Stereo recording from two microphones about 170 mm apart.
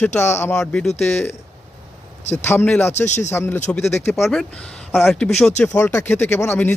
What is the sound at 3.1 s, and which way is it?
Speech, 45° left (ahead or behind).